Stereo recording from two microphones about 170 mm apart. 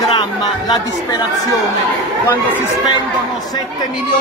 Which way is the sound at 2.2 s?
15° left (ahead or behind).